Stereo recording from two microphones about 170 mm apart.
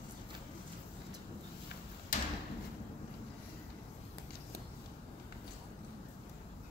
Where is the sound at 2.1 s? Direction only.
55° left (ahead or behind).